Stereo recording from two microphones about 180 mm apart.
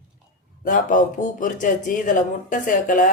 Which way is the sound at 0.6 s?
50° left (ahead or behind).